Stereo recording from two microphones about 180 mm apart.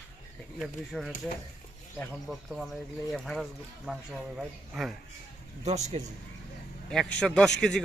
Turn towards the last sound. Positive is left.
turn(degrees=5)  # may be behind; listen again after turning